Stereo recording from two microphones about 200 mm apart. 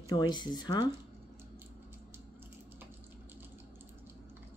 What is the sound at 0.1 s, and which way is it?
Speech, 20° left (ahead or behind).